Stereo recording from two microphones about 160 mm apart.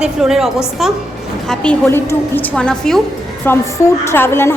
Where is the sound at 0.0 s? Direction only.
5° right (ahead or behind).